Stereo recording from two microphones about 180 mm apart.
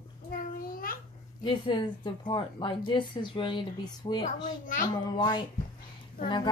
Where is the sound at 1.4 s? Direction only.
30° left (ahead or behind).